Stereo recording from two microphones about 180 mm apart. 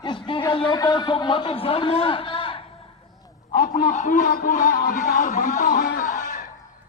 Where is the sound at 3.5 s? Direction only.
55° left (ahead or behind).